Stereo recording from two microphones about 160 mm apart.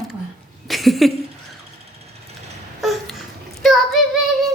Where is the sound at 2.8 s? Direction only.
Centre (ahead or behind).